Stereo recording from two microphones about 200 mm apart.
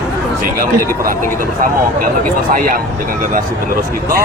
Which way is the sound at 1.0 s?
45° right (ahead or behind).